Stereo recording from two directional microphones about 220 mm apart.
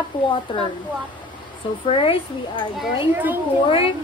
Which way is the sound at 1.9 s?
25° left (ahead or behind).